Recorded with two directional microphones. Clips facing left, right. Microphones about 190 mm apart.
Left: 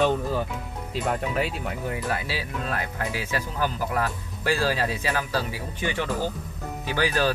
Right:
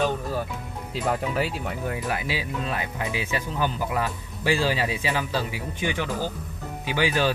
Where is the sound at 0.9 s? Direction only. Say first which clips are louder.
Right 1 dB; centre (ahead or behind).